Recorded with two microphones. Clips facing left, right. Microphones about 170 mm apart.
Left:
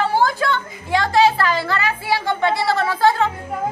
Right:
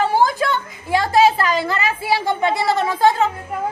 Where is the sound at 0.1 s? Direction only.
20° right (ahead or behind).